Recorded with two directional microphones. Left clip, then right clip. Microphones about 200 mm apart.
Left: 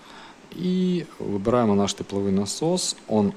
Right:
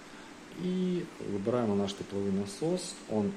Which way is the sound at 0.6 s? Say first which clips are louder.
Left 7 dB; 40° left (ahead or behind).